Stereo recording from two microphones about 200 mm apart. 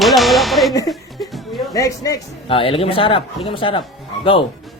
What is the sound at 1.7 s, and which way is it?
A man's voice, 15° left (ahead or behind).